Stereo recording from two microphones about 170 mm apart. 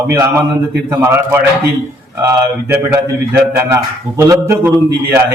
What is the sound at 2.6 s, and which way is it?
A man's voice, 15° right (ahead or behind).